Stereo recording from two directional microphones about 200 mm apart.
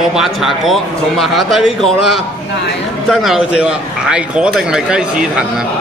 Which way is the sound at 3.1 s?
Centre (ahead or behind).